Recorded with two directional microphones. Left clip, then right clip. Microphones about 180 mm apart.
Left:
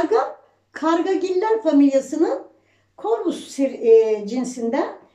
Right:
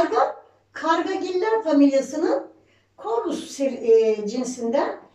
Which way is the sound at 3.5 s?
25° left (ahead or behind).